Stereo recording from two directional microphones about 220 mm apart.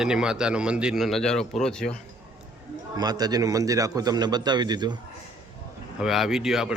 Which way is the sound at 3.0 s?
20° right (ahead or behind).